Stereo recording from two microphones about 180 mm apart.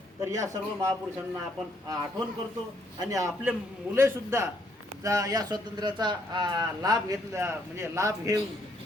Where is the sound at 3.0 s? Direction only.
20° right (ahead or behind).